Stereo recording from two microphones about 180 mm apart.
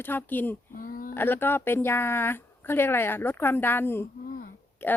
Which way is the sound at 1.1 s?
10° left (ahead or behind).